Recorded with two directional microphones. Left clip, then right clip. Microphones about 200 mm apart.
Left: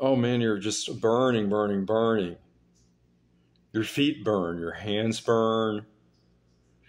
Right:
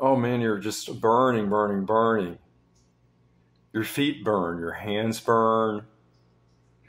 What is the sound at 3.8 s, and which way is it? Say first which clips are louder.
Speech: even; 10° left (ahead or behind).